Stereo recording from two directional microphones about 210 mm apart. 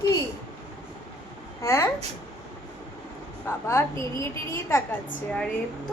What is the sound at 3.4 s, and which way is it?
A woman's voice, 10° left (ahead or behind).